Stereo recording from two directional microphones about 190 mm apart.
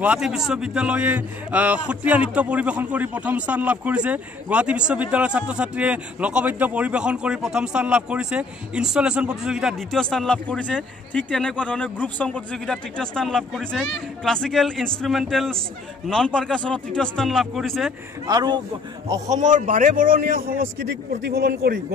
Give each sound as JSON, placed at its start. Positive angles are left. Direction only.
{"t": 0.0, "sound": "a man's voice", "side_deg": -5}
{"t": 18.2, "sound": "a man's voice", "side_deg": -20}
{"t": 19.2, "sound": "a man's voice", "side_deg": -40}